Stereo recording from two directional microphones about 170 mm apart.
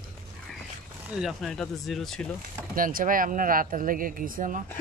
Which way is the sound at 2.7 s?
55° right (ahead or behind).